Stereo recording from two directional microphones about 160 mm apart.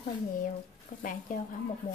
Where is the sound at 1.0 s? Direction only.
55° left (ahead or behind).